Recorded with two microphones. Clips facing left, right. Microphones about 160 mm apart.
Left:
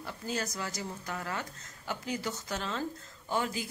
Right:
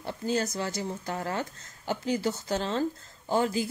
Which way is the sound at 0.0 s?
25° right (ahead or behind).